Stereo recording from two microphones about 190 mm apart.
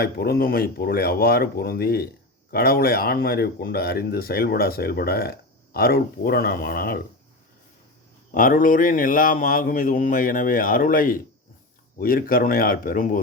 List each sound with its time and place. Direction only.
0.0 s speech: 55° left (ahead or behind)
8.3 s speech: 45° left (ahead or behind)